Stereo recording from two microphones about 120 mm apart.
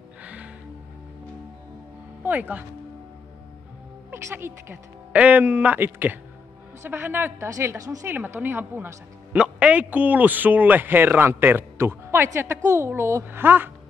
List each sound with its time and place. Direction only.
0.2 s music: 10° right (ahead or behind)
2.2 s speech: 15° right (ahead or behind)
4.1 s a woman's voice: 20° right (ahead or behind)